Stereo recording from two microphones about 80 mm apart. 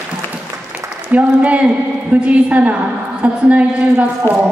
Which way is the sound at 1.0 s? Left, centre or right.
Centre.